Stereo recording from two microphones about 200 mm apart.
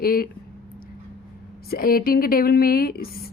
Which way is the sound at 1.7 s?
50° left (ahead or behind).